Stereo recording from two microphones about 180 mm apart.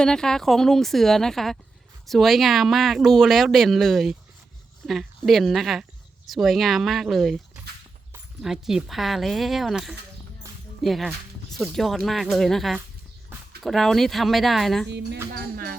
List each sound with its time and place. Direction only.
0.0 s speech: 5° left (ahead or behind)
14.8 s speech: 70° right (ahead or behind)
15.5 s speech: 55° right (ahead or behind)